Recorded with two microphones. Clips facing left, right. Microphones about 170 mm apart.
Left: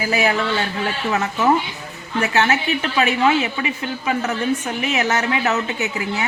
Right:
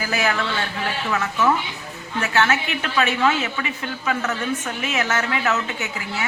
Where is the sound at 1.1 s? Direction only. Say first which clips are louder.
Left 2 dB; 35° left (ahead or behind).